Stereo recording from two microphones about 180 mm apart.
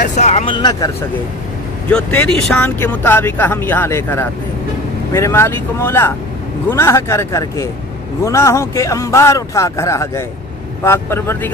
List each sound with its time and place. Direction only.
0.1 s speech: 40° left (ahead or behind)
0.6 s speech: 20° left (ahead or behind)
1.9 s speech: 10° left (ahead or behind)